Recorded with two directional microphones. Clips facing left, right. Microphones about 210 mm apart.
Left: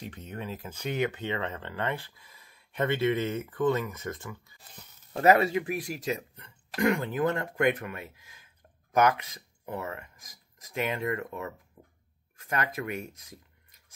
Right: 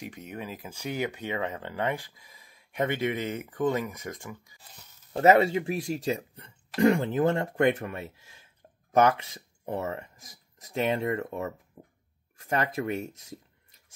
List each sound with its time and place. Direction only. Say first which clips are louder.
0.0 s speech: right 1 dB; 10° right (ahead or behind)
5.2 s speech: right 2 dB; 25° right (ahead or behind)
11.8 s a sound: right 4 dB; 30° right (ahead or behind)
12.4 s speech: right 3 dB; 30° right (ahead or behind)